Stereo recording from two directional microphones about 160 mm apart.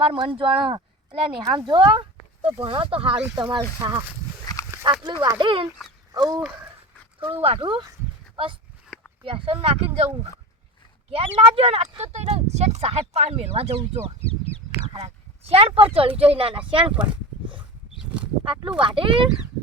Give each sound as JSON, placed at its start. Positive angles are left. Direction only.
{"t": 0.0, "sound": "speech", "side_deg": -35}
{"t": 4.7, "sound": "a sound", "side_deg": -25}
{"t": 5.2, "sound": "speech", "side_deg": -30}
{"t": 7.2, "sound": "speech", "side_deg": -35}
{"t": 9.2, "sound": "speech", "side_deg": -35}
{"t": 11.1, "sound": "speech", "side_deg": -35}
{"t": 14.8, "sound": "a sound", "side_deg": -40}
{"t": 16.0, "sound": "speech", "side_deg": -35}
{"t": 17.0, "sound": "a sound", "side_deg": -30}
{"t": 18.8, "sound": "speech", "side_deg": -35}